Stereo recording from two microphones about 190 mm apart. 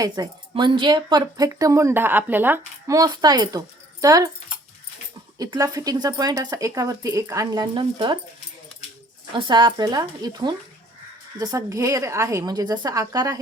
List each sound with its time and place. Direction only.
0.0 s speech: 20° right (ahead or behind)
5.4 s speech: 20° right (ahead or behind)
9.3 s a woman's voice: 25° right (ahead or behind)